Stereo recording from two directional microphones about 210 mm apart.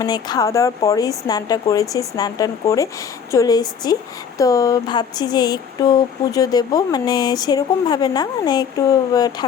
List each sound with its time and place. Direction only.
0.0 s speech: 20° left (ahead or behind)